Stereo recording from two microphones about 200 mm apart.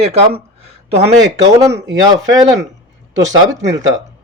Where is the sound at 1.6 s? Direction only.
15° right (ahead or behind).